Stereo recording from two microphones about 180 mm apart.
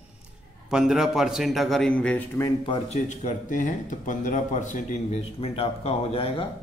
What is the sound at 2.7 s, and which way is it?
Speech, 40° left (ahead or behind).